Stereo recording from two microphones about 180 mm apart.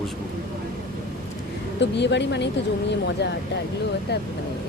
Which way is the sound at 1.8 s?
75° left (ahead or behind).